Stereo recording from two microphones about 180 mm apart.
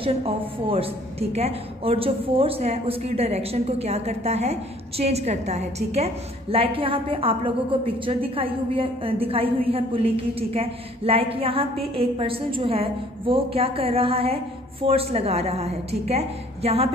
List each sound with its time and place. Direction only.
0.0 s a woman's voice: 30° right (ahead or behind)